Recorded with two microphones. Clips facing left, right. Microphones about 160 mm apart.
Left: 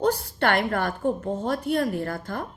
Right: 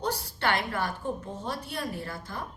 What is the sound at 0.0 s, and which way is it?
A woman's voice, 55° left (ahead or behind).